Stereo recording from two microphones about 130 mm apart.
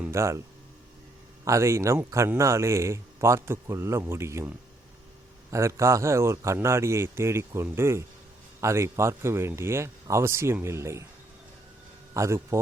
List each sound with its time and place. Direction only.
0.0 s speech: 20° right (ahead or behind)
1.5 s speech: 20° right (ahead or behind)
12.1 s a man's voice: 20° right (ahead or behind)